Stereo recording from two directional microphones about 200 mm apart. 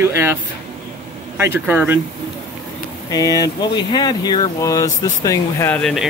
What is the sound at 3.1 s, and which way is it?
Speech, 20° left (ahead or behind).